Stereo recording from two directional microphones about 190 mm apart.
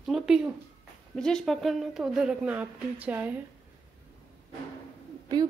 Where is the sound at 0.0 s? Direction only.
Centre (ahead or behind).